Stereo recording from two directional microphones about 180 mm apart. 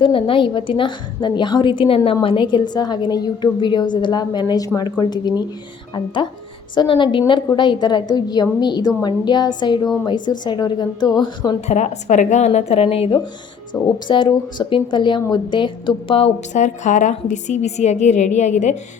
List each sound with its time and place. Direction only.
0.0 s a woman's voice: 30° left (ahead or behind)
6.7 s a woman's voice: 30° left (ahead or behind)
9.8 s a woman's voice: centre (ahead or behind)
10.2 s a woman's voice: 25° left (ahead or behind)
11.7 s a woman's voice: 40° left (ahead or behind)
13.7 s speech: 15° left (ahead or behind)
14.1 s a woman's voice: 25° left (ahead or behind)